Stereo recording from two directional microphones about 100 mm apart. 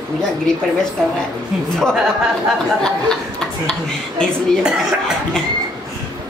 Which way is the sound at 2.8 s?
5° left (ahead or behind).